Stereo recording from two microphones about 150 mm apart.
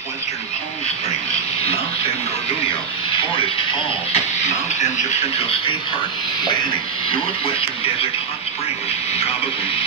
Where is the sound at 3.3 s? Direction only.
40° left (ahead or behind).